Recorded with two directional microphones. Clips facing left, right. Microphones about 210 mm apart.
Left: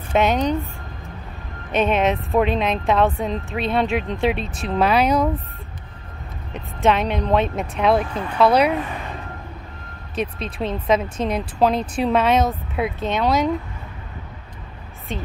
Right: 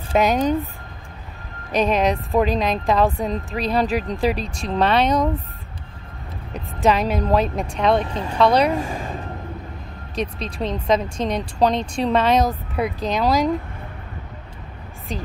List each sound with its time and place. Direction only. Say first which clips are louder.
0.1 s speech: right 1 dB; centre (ahead or behind)
1.7 s speech: even; centre (ahead or behind)
6.5 s a woman's voice: even; centre (ahead or behind)
8.1 s speech: even; 25° right (ahead or behind)
8.4 s speech: left 1 dB; 5° left (ahead or behind)
8.7 s speech: right 1 dB; 45° right (ahead or behind)
10.1 s speech: even; 5° left (ahead or behind)
15.1 s speech: even; centre (ahead or behind)